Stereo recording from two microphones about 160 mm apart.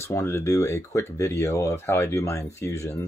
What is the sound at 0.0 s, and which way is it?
Speech, 15° left (ahead or behind).